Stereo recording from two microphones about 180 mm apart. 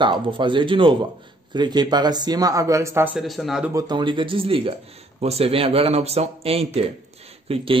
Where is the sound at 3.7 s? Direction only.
25° right (ahead or behind).